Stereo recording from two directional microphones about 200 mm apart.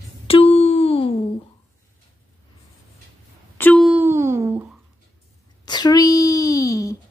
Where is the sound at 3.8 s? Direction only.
10° right (ahead or behind).